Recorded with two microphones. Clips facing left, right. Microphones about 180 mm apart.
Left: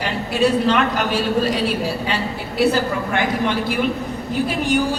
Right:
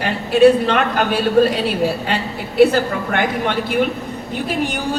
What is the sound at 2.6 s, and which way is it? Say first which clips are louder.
Speech: right 5 dB; 60° right (ahead or behind).